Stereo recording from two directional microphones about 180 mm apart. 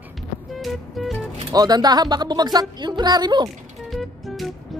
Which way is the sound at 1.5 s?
20° right (ahead or behind).